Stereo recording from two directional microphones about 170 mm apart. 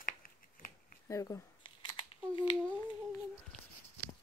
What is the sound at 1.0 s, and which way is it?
Speech, 15° left (ahead or behind).